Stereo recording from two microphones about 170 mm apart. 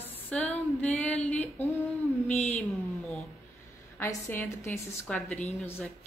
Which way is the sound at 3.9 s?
15° left (ahead or behind).